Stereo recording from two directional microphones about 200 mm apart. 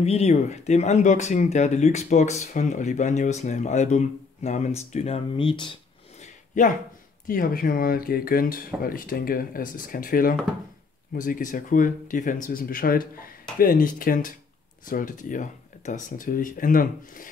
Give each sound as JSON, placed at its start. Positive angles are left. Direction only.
{"t": 0.0, "sound": "speech", "side_deg": 30}
{"t": 6.5, "sound": "speech", "side_deg": 40}